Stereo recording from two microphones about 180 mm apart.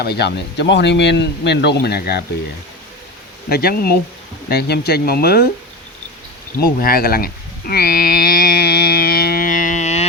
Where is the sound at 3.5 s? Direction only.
60° left (ahead or behind).